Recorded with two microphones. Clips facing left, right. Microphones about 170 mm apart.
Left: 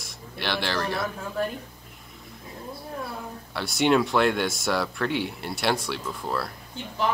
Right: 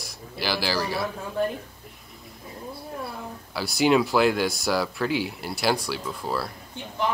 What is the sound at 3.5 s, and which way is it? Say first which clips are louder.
Speech: right 1 dB; centre (ahead or behind).